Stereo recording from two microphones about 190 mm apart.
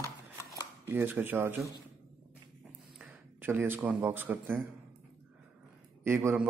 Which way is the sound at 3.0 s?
10° right (ahead or behind).